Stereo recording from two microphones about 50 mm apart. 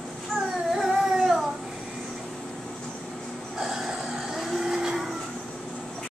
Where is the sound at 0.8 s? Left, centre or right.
Centre.